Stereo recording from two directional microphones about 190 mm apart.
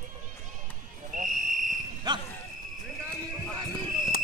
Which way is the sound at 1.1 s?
45° right (ahead or behind).